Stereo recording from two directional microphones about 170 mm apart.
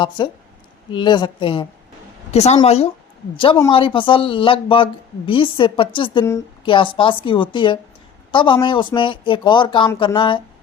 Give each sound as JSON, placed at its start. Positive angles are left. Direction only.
{"t": 0.2, "sound": "speech", "side_deg": 25}
{"t": 2.3, "sound": "speech", "side_deg": 40}